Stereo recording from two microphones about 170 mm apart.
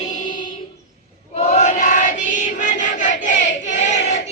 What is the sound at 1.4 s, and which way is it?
Crowd, 40° left (ahead or behind).